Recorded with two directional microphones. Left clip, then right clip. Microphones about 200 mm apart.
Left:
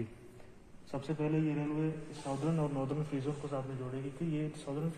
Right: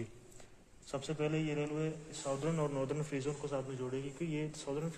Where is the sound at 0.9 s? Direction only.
40° right (ahead or behind).